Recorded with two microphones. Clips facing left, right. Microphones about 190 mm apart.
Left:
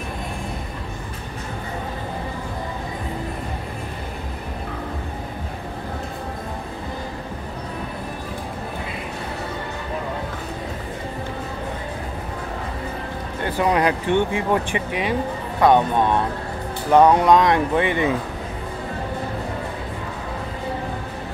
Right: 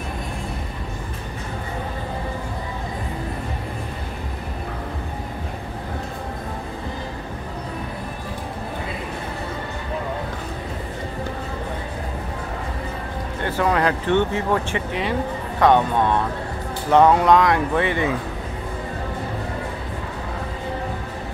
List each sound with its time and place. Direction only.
13.5 s speech: 15° left (ahead or behind)